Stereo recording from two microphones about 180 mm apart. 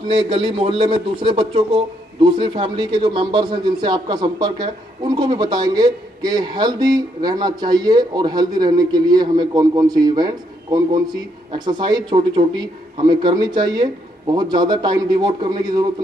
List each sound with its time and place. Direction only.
0.1 s speech: 30° right (ahead or behind)